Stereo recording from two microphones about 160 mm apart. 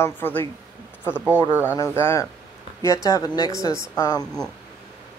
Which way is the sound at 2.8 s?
20° left (ahead or behind).